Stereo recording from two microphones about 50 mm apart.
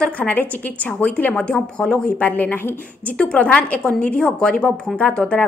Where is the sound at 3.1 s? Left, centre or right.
Left.